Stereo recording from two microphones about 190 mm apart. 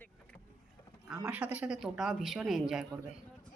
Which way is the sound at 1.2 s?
5° right (ahead or behind).